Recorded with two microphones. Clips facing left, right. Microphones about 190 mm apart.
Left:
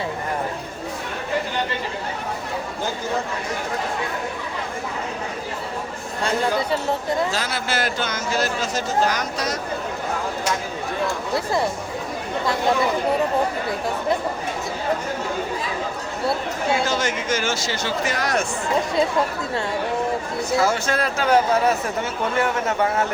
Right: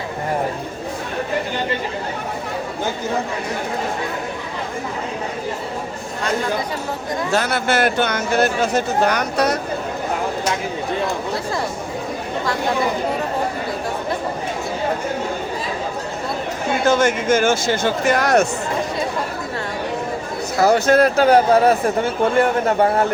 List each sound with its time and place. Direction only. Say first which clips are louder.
7.3 s speech: right 6 dB; 60° right (ahead or behind)
16.8 s speech: right 7 dB; 55° right (ahead or behind)
20.6 s speech: right 9 dB; 40° right (ahead or behind)